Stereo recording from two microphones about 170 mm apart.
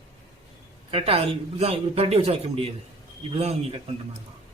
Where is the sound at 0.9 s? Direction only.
35° right (ahead or behind).